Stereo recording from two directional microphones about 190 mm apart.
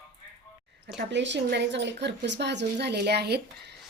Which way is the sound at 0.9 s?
70° right (ahead or behind).